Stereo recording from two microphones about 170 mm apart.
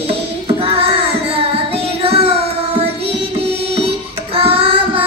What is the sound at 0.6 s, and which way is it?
Child singing, 35° right (ahead or behind).